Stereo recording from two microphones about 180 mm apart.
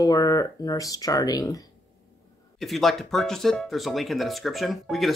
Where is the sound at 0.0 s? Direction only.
20° left (ahead or behind).